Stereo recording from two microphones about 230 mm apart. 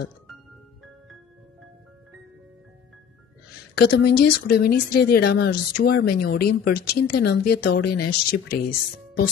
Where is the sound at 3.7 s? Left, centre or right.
Left.